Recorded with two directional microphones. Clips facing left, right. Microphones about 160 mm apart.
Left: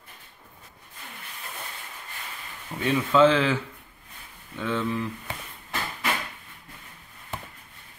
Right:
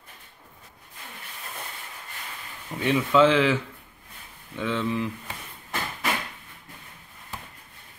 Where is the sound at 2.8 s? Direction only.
10° right (ahead or behind).